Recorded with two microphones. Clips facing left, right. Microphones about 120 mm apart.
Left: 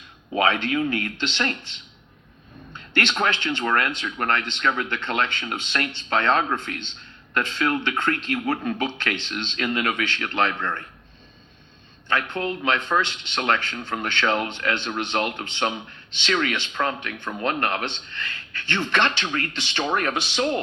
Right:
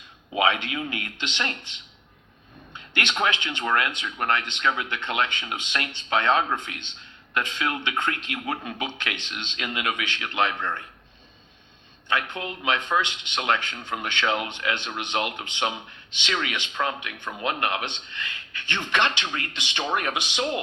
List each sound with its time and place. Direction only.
0.3 s speech: 15° right (ahead or behind)
12.0 s speech: 15° right (ahead or behind)